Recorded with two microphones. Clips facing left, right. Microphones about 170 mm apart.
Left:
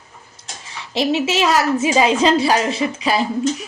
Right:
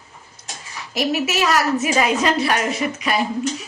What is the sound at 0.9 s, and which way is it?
A woman's voice, 25° left (ahead or behind).